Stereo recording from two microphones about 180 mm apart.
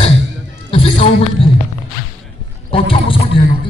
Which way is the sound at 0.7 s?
30° left (ahead or behind).